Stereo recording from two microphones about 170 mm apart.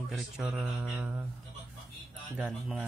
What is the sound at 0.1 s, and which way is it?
Speech, centre (ahead or behind).